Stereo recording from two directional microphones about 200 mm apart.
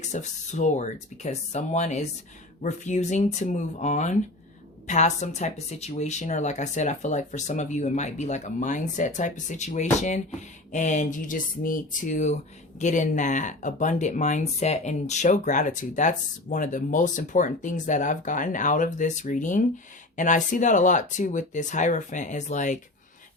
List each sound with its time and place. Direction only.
0.0 s speech: 35° left (ahead or behind)